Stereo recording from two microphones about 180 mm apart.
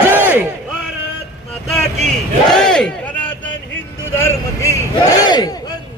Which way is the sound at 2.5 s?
5° left (ahead or behind).